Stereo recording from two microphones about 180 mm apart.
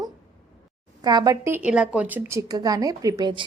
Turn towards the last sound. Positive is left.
turn(degrees=-25)  # may be behind; listen again after turning